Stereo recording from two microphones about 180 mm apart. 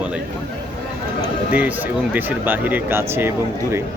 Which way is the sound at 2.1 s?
10° right (ahead or behind).